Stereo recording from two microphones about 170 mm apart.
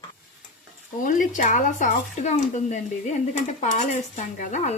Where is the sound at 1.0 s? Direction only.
50° left (ahead or behind).